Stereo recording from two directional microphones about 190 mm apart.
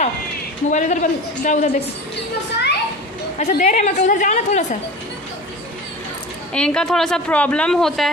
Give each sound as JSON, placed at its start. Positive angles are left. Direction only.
{"t": 0.7, "sound": "a woman's voice", "side_deg": 40}
{"t": 2.5, "sound": "a child's voice", "side_deg": 60}
{"t": 3.3, "sound": "a woman's voice", "side_deg": 40}
{"t": 6.5, "sound": "a woman's voice", "side_deg": 5}